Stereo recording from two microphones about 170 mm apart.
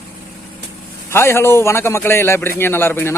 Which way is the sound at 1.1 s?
15° left (ahead or behind).